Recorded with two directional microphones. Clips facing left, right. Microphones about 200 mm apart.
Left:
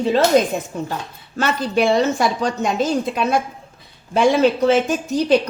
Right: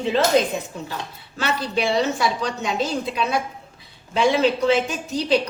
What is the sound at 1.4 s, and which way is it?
A woman's voice, 50° left (ahead or behind).